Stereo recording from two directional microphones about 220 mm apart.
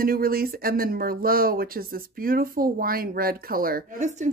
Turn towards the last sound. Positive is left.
turn(degrees=-35)  # may be behind; listen again after turning